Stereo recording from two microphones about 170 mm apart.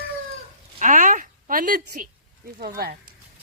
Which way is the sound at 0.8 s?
50° right (ahead or behind).